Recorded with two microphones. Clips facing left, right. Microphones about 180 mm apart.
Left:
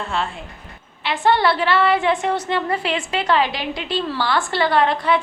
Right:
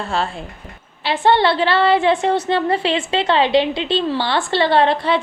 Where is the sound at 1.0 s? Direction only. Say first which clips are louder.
Right 2 dB; 30° right (ahead or behind).